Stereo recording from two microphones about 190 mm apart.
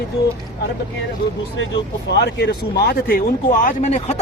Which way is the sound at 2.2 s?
65° left (ahead or behind).